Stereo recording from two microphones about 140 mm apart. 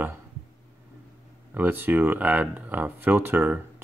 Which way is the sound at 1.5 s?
15° right (ahead or behind).